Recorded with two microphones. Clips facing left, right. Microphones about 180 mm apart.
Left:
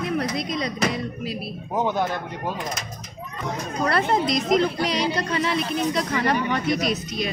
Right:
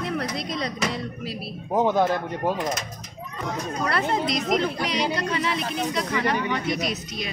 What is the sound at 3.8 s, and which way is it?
Speech, 40° left (ahead or behind).